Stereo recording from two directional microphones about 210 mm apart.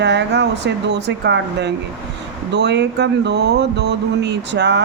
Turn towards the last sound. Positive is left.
turn(degrees=-55)  # may be behind; listen again after turning